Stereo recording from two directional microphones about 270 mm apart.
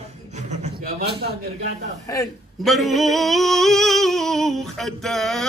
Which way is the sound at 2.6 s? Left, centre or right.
Centre.